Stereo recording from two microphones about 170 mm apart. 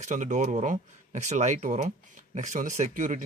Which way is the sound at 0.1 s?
45° right (ahead or behind).